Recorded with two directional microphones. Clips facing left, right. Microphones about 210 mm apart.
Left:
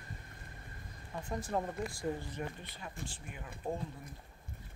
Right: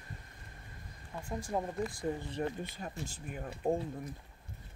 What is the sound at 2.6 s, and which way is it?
Speech, 45° right (ahead or behind).